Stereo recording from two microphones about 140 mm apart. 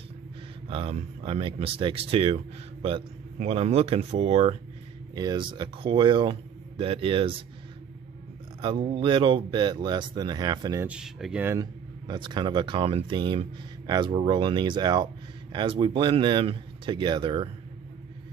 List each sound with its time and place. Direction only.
0.7 s speech: 40° right (ahead or behind)
5.1 s speech: 30° right (ahead or behind)
8.7 s speech: 55° right (ahead or behind)
9.0 s speech: 35° right (ahead or behind)
10.8 s speech: 5° right (ahead or behind)
11.4 s speech: 25° right (ahead or behind)